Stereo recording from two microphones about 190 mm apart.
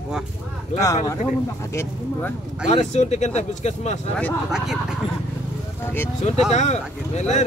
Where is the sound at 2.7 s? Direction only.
35° left (ahead or behind).